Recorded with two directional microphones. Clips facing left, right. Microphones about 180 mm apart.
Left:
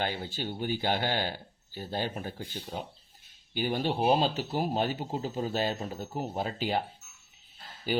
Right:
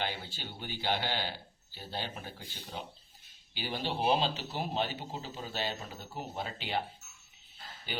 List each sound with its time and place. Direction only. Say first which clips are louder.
0.0 s speech: left 5 dB; 45° left (ahead or behind)
3.5 s speech: left 7 dB; 50° left (ahead or behind)